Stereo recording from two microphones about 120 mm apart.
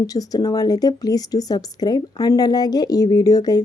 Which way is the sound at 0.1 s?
30° left (ahead or behind).